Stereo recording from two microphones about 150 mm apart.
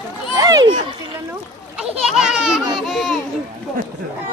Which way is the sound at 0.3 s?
25° right (ahead or behind).